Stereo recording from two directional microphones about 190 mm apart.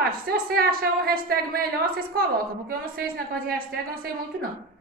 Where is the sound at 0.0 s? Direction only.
50° right (ahead or behind).